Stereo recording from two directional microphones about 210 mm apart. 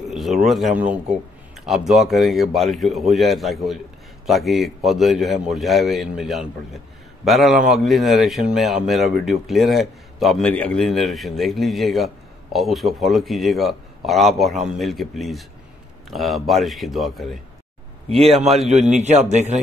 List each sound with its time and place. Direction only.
0.1 s a sound: centre (ahead or behind)
0.5 s speech: centre (ahead or behind)
18.7 s a man's voice: 35° right (ahead or behind)